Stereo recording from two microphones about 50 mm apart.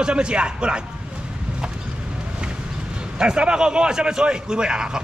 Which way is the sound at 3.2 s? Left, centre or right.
Centre.